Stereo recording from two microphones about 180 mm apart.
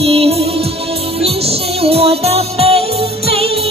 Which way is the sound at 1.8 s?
35° right (ahead or behind).